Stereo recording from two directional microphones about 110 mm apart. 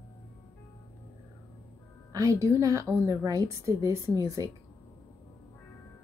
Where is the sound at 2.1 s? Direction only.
30° right (ahead or behind).